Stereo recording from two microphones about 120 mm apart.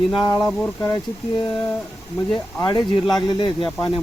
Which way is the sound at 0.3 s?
5° left (ahead or behind).